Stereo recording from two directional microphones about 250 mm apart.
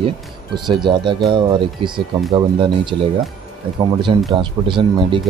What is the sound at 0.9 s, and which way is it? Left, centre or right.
Speech, centre.